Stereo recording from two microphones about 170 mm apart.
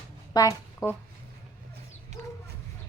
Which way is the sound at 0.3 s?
20° left (ahead or behind).